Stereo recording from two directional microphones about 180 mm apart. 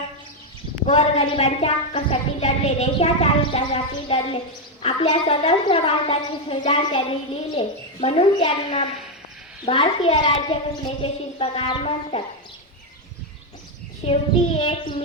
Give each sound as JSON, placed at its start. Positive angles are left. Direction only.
{"t": 0.9, "sound": "speech", "side_deg": 30}
{"t": 14.0, "sound": "speech", "side_deg": 35}